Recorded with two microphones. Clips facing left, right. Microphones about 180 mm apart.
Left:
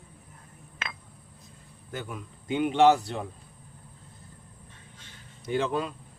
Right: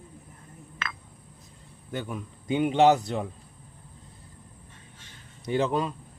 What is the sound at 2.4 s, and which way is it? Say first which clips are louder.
Speech: even; 20° right (ahead or behind).